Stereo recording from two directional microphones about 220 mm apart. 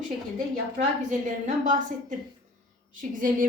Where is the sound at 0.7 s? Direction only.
35° right (ahead or behind).